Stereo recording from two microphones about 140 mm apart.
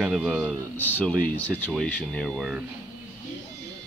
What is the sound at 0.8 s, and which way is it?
Speech, 15° left (ahead or behind).